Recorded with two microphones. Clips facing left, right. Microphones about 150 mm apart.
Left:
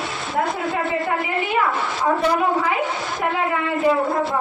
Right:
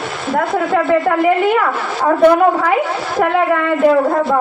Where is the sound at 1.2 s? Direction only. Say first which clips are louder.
Right 9 dB; 55° right (ahead or behind).